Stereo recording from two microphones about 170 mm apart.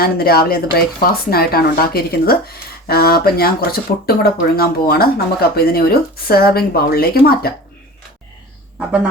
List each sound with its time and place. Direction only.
0.0 s a woman's voice: 65° left (ahead or behind)